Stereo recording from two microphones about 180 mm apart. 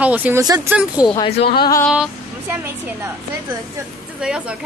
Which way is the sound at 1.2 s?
35° left (ahead or behind).